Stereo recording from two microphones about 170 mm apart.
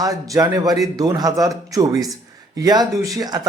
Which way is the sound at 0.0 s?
20° right (ahead or behind).